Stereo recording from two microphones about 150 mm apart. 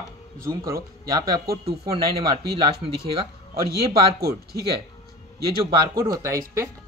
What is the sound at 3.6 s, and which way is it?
Speech, 90° right.